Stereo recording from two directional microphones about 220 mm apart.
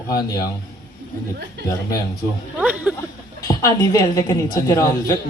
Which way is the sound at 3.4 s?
15° left (ahead or behind).